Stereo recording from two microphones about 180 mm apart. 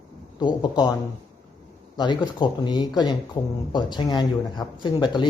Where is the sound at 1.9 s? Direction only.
25° left (ahead or behind).